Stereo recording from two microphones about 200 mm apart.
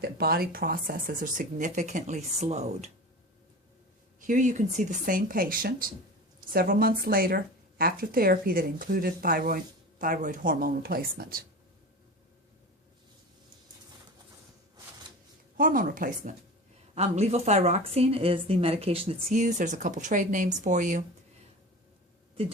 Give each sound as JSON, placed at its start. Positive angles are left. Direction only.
{"t": 0.0, "sound": "a woman's voice", "side_deg": -50}
{"t": 4.2, "sound": "a woman's voice", "side_deg": -40}
{"t": 15.5, "sound": "a woman's voice", "side_deg": -45}